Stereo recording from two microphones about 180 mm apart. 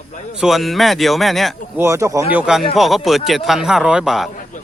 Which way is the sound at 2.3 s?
5° right (ahead or behind).